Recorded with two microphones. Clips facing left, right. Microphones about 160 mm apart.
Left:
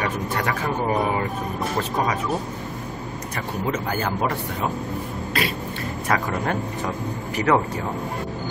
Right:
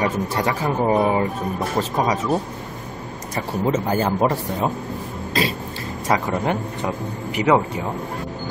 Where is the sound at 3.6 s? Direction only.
25° right (ahead or behind).